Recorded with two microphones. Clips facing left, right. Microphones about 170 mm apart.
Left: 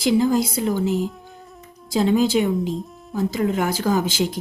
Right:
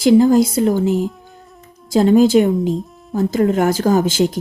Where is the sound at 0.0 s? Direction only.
45° right (ahead or behind).